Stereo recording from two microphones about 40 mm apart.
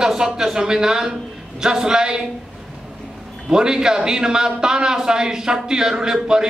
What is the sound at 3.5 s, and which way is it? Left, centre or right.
A man's voice, centre.